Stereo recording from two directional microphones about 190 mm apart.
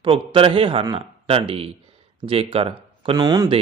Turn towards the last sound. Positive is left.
turn(degrees=-20)  # may be behind; listen again after turning